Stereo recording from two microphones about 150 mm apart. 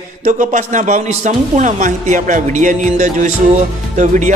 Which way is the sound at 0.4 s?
55° right (ahead or behind).